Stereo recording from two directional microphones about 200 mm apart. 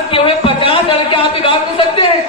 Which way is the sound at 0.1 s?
25° left (ahead or behind).